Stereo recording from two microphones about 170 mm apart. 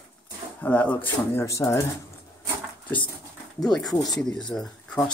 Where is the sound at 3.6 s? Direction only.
5° left (ahead or behind).